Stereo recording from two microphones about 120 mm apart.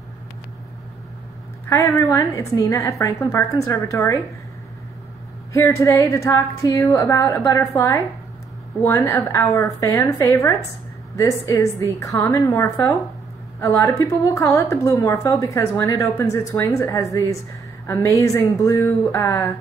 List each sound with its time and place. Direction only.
1.7 s a woman's voice: 25° left (ahead or behind)
5.5 s a woman's voice: 25° left (ahead or behind)